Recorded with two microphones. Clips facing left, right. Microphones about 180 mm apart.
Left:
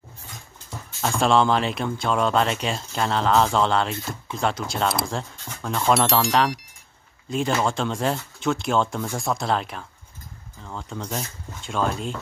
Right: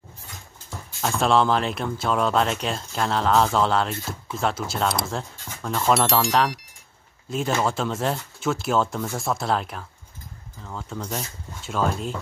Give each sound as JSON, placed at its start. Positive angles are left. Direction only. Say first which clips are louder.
{"t": 1.0, "sound": "speech", "louder": "left 1 dB", "side_deg": 0}